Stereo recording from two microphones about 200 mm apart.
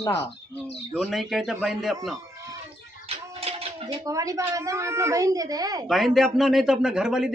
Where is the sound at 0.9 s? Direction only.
Centre (ahead or behind).